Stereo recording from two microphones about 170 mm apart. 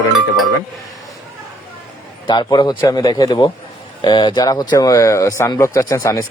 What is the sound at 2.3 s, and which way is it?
Speech, 25° left (ahead or behind).